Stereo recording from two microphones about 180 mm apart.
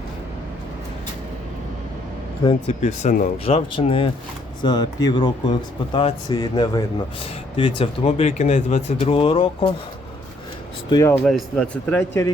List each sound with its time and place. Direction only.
2.6 s a man's voice: 40° left (ahead or behind); by 6.8 s 20° left (ahead or behind)
7.5 s speech: 30° left (ahead or behind)
10.8 s a man's voice: 20° left (ahead or behind)
11.2 s speech: centre (ahead or behind)